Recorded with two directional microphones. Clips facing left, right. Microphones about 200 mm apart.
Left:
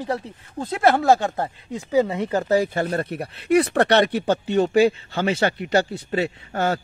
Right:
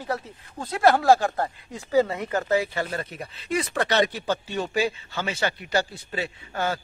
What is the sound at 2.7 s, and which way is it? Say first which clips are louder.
Speech: left 6 dB; 50° left (ahead or behind).